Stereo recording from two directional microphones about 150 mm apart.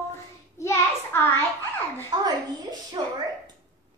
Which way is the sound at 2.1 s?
30° right (ahead or behind).